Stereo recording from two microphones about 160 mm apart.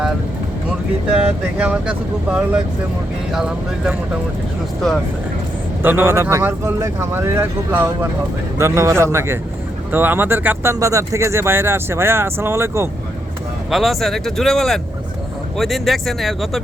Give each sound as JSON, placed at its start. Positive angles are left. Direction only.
{"t": 1.1, "sound": "speech", "side_deg": -5}
{"t": 5.8, "sound": "speech", "side_deg": -15}
{"t": 13.7, "sound": "speech", "side_deg": 0}